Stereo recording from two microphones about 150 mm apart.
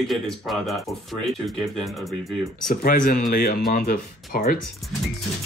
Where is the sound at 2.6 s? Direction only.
70° left (ahead or behind).